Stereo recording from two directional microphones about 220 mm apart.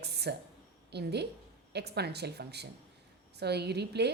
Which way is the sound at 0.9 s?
50° right (ahead or behind).